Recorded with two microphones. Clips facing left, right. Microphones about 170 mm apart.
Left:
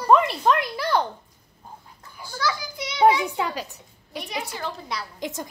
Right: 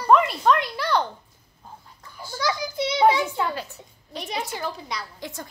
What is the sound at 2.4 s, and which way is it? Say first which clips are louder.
Speech: right 1 dB; 20° right (ahead or behind).